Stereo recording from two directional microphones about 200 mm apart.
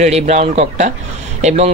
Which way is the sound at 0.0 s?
35° right (ahead or behind).